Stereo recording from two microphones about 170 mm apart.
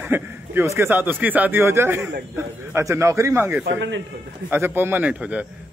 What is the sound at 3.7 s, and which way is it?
Speech, 90° right.